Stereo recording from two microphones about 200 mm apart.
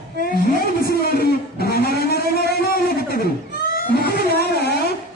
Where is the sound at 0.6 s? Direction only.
50° left (ahead or behind).